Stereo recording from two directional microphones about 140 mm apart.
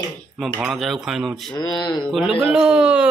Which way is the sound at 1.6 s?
30° left (ahead or behind).